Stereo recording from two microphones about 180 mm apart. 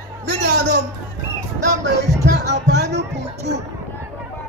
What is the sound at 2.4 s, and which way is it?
Speech, 70° right (ahead or behind).